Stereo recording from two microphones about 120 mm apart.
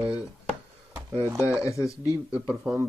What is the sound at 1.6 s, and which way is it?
Speech, 25° left (ahead or behind).